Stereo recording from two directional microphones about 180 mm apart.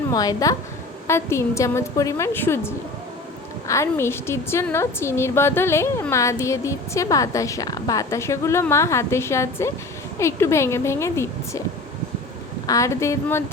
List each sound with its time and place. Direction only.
0.1 s a woman's voice: 20° left (ahead or behind)
12.6 s a woman's voice: 20° left (ahead or behind)